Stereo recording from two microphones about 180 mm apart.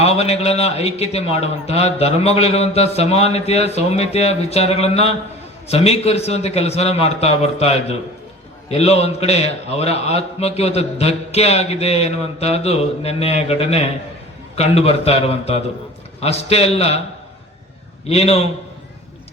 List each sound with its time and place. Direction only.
0.0 s a man's voice: 35° left (ahead or behind)
18.1 s a man's voice: 35° left (ahead or behind)